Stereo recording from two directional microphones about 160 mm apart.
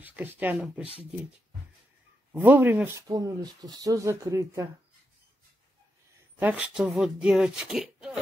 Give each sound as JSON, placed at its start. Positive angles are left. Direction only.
{"t": 0.0, "sound": "speech", "side_deg": -10}
{"t": 2.3, "sound": "speech", "side_deg": -10}
{"t": 6.4, "sound": "speech", "side_deg": -10}